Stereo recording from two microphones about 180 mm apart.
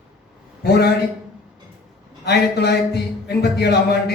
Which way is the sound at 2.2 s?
65° left (ahead or behind).